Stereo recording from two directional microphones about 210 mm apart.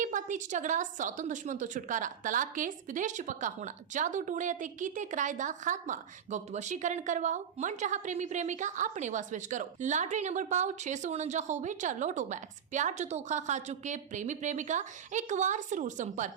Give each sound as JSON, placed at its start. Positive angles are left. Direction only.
{"t": 0.0, "sound": "a woman's voice", "side_deg": -35}